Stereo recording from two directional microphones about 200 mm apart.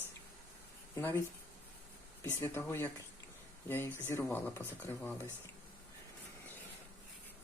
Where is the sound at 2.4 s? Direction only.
10° left (ahead or behind).